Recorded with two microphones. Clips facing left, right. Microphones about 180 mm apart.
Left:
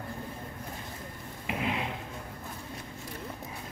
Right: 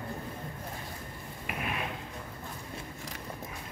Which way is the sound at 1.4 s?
20° left (ahead or behind).